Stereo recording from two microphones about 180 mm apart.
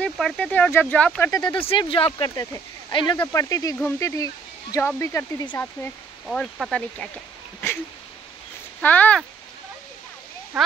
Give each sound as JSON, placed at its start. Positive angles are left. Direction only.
{"t": 0.0, "sound": "speech", "side_deg": 5}
{"t": 1.3, "sound": "speech", "side_deg": 25}
{"t": 3.2, "sound": "speech", "side_deg": 15}
{"t": 8.8, "sound": "speech", "side_deg": 10}